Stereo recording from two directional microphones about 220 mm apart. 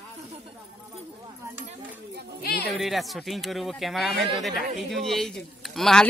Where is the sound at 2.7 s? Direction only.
Centre (ahead or behind).